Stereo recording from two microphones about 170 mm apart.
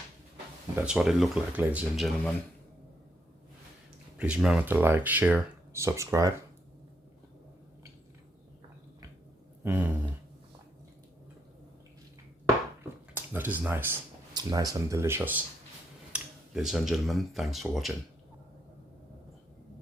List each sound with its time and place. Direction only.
0.8 s speech: 5° right (ahead or behind)
4.2 s speech: 5° right (ahead or behind)
9.6 s speech: 15° right (ahead or behind)
13.1 s speech: 10° right (ahead or behind)
14.3 s speech: 25° right (ahead or behind); by 17.9 s centre (ahead or behind)